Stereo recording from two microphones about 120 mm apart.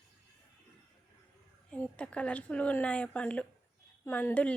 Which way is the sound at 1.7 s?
10° left (ahead or behind).